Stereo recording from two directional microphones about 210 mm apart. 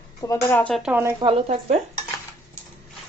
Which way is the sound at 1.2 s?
30° right (ahead or behind).